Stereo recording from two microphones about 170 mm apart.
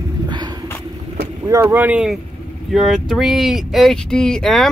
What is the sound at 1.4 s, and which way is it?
Speech, 20° right (ahead or behind).